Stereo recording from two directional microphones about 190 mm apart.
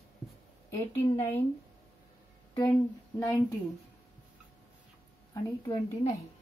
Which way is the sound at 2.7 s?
10° left (ahead or behind).